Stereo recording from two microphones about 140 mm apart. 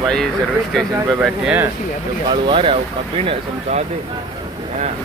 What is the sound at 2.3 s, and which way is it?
Speech, 35° right (ahead or behind).